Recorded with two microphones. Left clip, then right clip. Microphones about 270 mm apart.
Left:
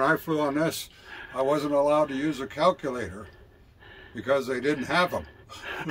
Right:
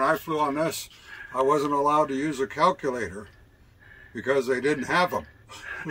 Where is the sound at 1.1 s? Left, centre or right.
Left.